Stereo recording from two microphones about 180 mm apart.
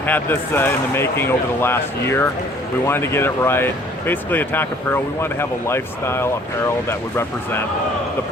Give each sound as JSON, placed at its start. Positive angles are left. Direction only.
{"t": 0.0, "sound": "speech", "side_deg": 10}